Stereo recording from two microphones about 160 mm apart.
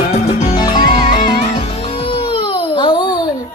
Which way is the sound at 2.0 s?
35° left (ahead or behind).